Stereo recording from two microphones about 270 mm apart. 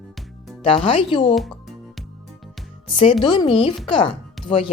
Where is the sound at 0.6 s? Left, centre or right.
Centre.